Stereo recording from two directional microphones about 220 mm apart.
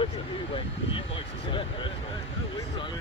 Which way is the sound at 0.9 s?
25° left (ahead or behind).